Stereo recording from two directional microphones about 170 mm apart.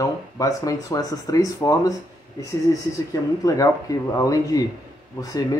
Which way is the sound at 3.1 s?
20° left (ahead or behind).